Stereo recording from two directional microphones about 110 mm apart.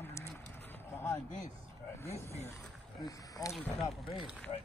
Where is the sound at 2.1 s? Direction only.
75° left (ahead or behind).